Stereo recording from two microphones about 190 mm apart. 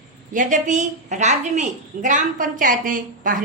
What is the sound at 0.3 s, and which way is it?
A woman's voice, 40° right (ahead or behind).